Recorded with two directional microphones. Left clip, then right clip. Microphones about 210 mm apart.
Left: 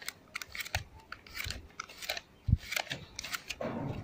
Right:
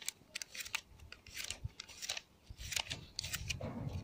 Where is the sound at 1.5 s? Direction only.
5° right (ahead or behind).